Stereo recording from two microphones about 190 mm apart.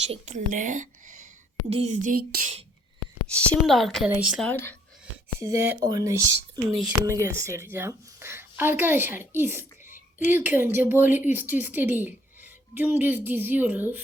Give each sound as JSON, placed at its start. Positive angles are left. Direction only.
{"t": 0.0, "sound": "speech", "side_deg": -35}
{"t": 3.3, "sound": "speech", "side_deg": 5}
{"t": 4.5, "sound": "speech", "side_deg": 10}
{"t": 5.4, "sound": "a woman's voice", "side_deg": -15}